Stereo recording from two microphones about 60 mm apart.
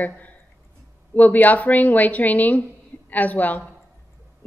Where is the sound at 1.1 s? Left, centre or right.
Left.